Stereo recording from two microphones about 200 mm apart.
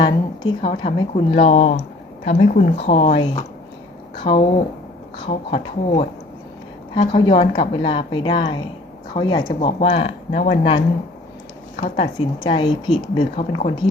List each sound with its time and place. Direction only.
0.0 s speech: 25° left (ahead or behind)
11.9 s speech: 25° left (ahead or behind)